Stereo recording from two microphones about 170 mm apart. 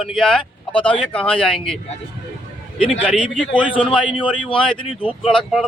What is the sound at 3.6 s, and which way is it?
Speech, 5° right (ahead or behind).